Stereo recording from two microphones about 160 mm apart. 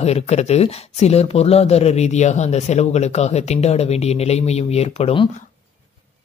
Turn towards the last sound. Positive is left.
turn(degrees=35)  # may be behind; listen again after turning